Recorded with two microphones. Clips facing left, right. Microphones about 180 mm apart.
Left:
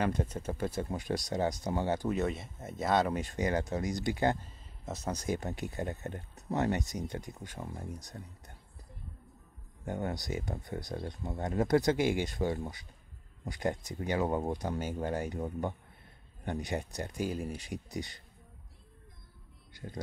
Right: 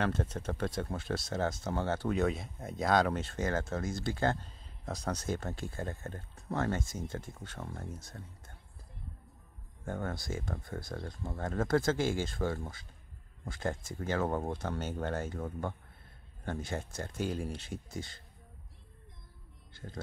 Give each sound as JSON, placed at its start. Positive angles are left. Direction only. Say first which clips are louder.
{"t": 0.0, "sound": "speech", "louder": "left 1 dB", "side_deg": 10}
{"t": 2.1, "sound": "speech", "louder": "right 1 dB", "side_deg": 0}
{"t": 3.2, "sound": "speech", "louder": "left 2 dB", "side_deg": 15}
{"t": 4.5, "sound": "speech", "louder": "even", "side_deg": 5}
{"t": 9.8, "sound": "speech", "louder": "left 2 dB", "side_deg": 15}